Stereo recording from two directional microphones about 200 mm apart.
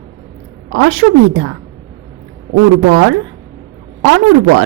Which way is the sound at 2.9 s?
80° right.